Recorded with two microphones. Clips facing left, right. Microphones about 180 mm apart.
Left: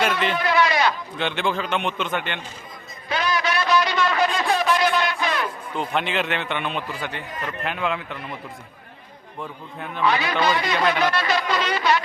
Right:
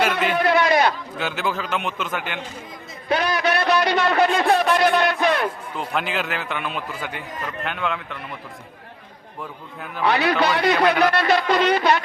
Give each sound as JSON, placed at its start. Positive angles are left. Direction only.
{"t": 0.3, "sound": "speech", "side_deg": -55}
{"t": 1.2, "sound": "a man's voice", "side_deg": -5}
{"t": 3.1, "sound": "a man's voice", "side_deg": -55}
{"t": 5.7, "sound": "a man's voice", "side_deg": 0}
{"t": 10.0, "sound": "speech", "side_deg": -65}